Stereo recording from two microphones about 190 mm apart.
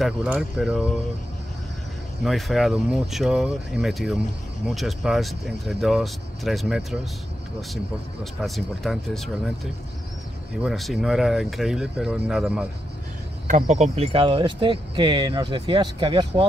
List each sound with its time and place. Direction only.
0.0 s speech: 5° right (ahead or behind)
2.2 s speech: centre (ahead or behind)
10.6 s speech: centre (ahead or behind)
13.5 s speech: 40° right (ahead or behind); by 16.4 s 25° right (ahead or behind)